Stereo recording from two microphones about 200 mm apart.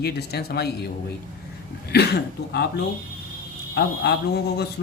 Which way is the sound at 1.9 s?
55° left (ahead or behind).